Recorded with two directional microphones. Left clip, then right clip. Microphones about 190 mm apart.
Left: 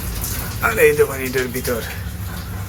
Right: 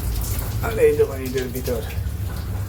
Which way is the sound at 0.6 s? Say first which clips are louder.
Left 3 dB; 5° right (ahead or behind).